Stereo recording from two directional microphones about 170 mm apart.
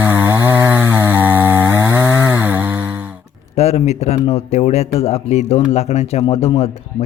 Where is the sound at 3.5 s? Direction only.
40° left (ahead or behind).